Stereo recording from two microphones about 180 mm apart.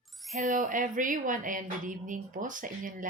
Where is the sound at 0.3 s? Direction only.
45° right (ahead or behind).